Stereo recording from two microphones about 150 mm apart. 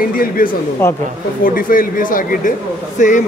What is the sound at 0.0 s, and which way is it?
Speech, 70° left (ahead or behind).